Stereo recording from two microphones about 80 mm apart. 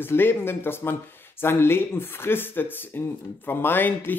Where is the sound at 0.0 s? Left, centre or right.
Left.